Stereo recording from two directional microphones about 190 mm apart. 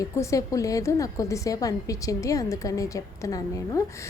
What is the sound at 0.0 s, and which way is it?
A woman's voice, 15° left (ahead or behind).